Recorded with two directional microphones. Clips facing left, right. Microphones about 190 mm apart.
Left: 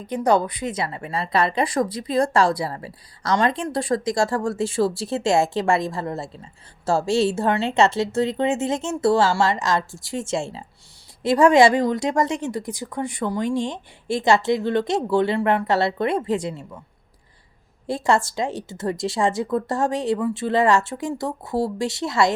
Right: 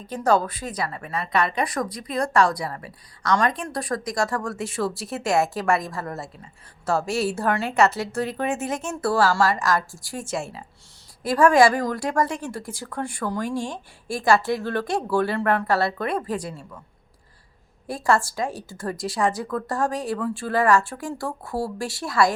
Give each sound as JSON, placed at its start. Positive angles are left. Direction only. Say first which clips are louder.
{"t": 0.1, "sound": "a woman's voice", "louder": "left 2 dB", "side_deg": 20}
{"t": 17.8, "sound": "a woman's voice", "louder": "left 2 dB", "side_deg": 25}